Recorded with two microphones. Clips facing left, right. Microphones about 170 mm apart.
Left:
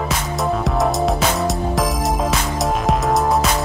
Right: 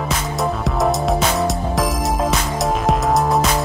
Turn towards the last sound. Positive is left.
turn(degrees=0)  # may be behind; listen again after turning